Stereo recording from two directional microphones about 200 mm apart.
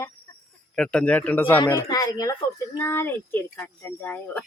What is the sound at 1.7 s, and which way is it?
Speech, 20° left (ahead or behind).